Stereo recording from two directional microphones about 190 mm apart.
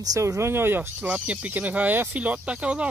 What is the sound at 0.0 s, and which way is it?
Speech, 15° right (ahead or behind).